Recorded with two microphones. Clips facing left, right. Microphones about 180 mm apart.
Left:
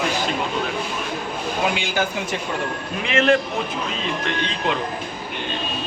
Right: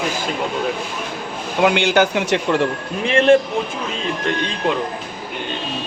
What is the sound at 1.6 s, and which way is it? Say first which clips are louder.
Speech: right 9 dB; 70° right (ahead or behind).